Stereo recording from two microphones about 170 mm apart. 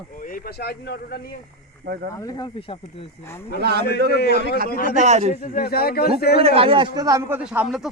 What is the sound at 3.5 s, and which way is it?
Speech, 70° right (ahead or behind).